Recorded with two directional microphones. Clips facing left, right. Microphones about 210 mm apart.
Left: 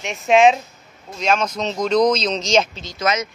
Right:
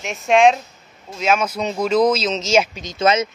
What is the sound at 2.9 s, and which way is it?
Speech, 25° right (ahead or behind).